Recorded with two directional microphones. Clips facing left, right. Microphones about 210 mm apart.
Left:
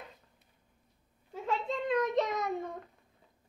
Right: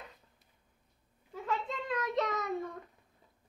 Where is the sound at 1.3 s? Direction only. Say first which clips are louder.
Left 3 dB; 25° left (ahead or behind).